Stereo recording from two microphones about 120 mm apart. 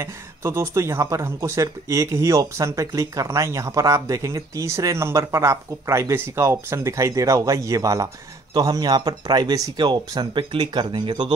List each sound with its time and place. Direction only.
0.0 s speech: 20° right (ahead or behind); by 11.3 s 40° right (ahead or behind)